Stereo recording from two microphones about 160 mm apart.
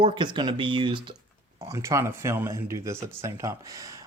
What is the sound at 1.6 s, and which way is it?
Speech, 20° right (ahead or behind).